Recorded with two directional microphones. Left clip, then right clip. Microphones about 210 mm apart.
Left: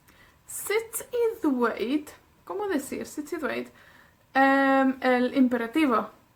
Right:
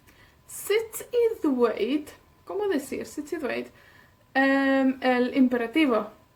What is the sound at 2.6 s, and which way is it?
A woman's voice, 20° left (ahead or behind).